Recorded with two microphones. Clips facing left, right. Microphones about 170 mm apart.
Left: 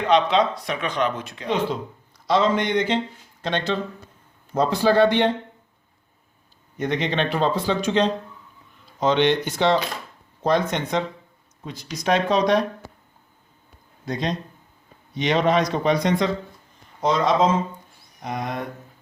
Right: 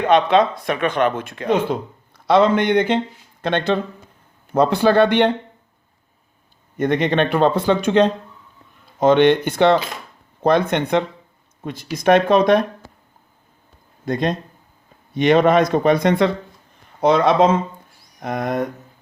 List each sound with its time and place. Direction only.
0.0 s speech: 55° right (ahead or behind)
6.7 s speech: 50° right (ahead or behind)
14.0 s speech: 55° right (ahead or behind)